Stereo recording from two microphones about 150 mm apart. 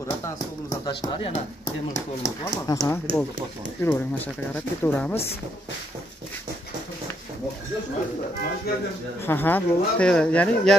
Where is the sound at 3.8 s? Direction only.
10° left (ahead or behind).